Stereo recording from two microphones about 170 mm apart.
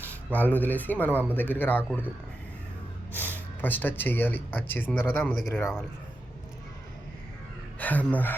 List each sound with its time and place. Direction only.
0.1 s speech: 10° left (ahead or behind)
1.1 s speech: 10° right (ahead or behind)
1.4 s speech: 10° left (ahead or behind)
3.6 s speech: 10° left (ahead or behind)
5.5 s speech: 15° left (ahead or behind)
7.8 s speech: 10° left (ahead or behind)